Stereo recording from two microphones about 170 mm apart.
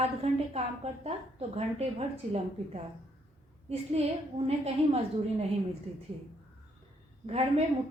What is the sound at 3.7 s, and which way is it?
A woman's voice, 35° right (ahead or behind).